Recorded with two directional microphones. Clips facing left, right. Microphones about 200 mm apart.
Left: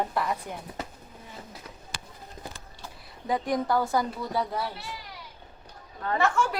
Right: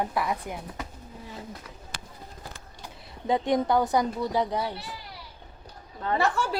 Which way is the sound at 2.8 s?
25° right (ahead or behind).